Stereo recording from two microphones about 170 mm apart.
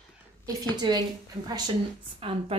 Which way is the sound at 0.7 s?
25° right (ahead or behind).